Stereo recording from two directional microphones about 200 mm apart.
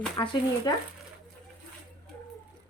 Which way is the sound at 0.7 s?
20° left (ahead or behind).